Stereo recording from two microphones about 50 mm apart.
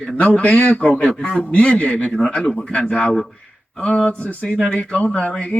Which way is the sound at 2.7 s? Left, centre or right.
Left.